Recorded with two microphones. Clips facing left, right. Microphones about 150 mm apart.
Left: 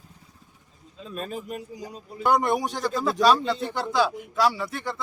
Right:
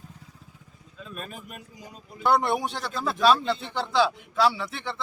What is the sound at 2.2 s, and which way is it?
Speech, 10° left (ahead or behind).